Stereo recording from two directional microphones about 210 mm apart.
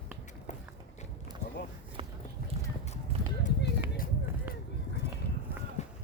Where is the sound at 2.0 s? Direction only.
25° right (ahead or behind).